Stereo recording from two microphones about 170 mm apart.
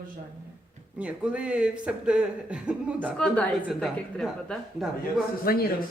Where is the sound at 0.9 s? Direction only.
5° right (ahead or behind).